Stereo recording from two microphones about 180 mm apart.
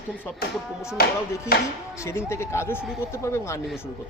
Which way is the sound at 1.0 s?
55° left (ahead or behind).